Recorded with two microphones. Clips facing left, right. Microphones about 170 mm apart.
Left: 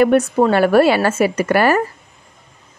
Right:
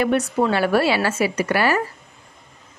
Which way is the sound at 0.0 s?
50° left (ahead or behind).